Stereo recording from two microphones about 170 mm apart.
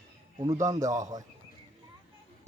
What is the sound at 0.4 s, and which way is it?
Speech, 20° right (ahead or behind).